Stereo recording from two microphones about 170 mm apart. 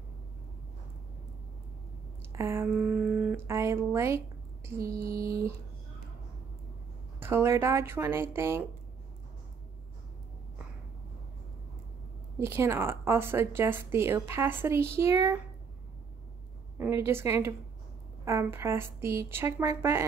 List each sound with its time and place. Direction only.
2.3 s a woman's voice: 15° right (ahead or behind)
4.6 s mantra: 15° right (ahead or behind)
7.2 s a woman's voice: 15° right (ahead or behind)
12.4 s a woman's voice: 15° right (ahead or behind)
16.7 s a woman's voice: 15° right (ahead or behind)